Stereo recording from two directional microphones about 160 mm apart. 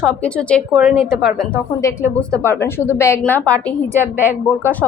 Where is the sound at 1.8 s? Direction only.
20° left (ahead or behind).